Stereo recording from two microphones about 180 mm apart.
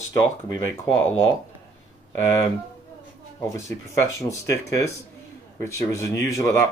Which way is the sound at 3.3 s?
15° left (ahead or behind).